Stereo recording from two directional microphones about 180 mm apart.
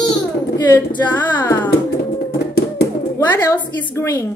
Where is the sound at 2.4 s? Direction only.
65° left (ahead or behind).